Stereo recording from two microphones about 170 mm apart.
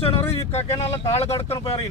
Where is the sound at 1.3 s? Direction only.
15° left (ahead or behind).